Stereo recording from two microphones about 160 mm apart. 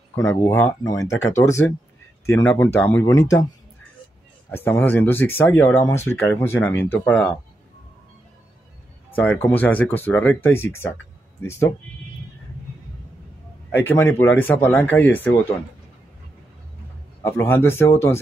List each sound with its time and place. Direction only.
0.1 s speech: 15° left (ahead or behind)
4.5 s speech: 15° left (ahead or behind)
9.1 s speech: 10° left (ahead or behind)
13.7 s speech: 15° left (ahead or behind)
17.2 s speech: 15° left (ahead or behind)